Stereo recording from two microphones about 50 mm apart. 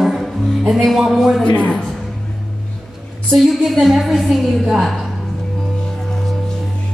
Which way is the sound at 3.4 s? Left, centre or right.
Centre.